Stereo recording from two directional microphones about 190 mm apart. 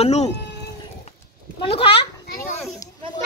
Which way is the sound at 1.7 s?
30° left (ahead or behind).